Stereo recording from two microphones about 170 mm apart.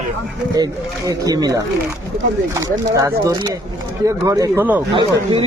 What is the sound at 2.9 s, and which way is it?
Speech, 20° right (ahead or behind).